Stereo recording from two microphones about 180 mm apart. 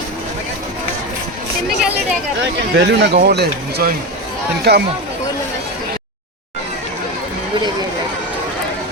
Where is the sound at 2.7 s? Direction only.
70° right (ahead or behind).